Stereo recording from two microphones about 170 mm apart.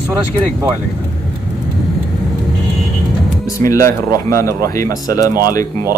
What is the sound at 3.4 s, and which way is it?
Speech, 20° left (ahead or behind).